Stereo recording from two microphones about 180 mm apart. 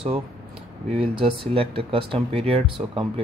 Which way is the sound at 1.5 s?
30° right (ahead or behind).